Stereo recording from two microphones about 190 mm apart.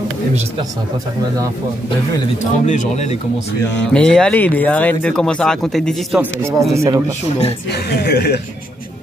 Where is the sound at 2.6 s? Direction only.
40° left (ahead or behind).